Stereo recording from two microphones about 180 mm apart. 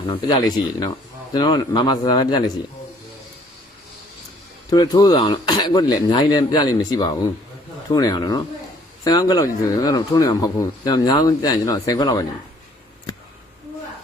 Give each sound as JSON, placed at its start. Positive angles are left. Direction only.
{"t": 0.0, "sound": "speech", "side_deg": 25}
{"t": 4.7, "sound": "speech", "side_deg": 20}